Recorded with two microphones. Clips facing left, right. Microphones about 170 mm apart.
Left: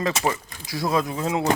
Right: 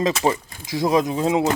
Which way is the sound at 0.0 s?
20° right (ahead or behind).